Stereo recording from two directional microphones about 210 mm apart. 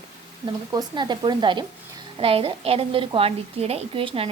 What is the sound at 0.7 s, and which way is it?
Speech, 20° right (ahead or behind).